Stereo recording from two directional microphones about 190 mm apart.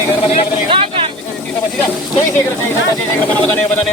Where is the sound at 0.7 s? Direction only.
25° right (ahead or behind).